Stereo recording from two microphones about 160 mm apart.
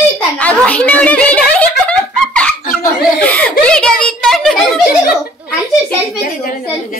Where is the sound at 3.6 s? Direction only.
5° left (ahead or behind).